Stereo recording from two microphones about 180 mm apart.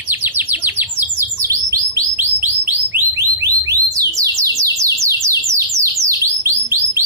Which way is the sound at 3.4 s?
20° right (ahead or behind).